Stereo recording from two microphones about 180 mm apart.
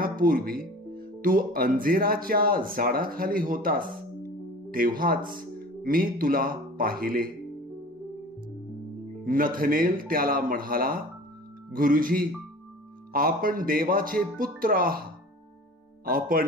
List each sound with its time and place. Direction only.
0.0 s speech: 50° right (ahead or behind)
9.2 s speech: 50° right (ahead or behind)
16.1 s speech: 55° right (ahead or behind)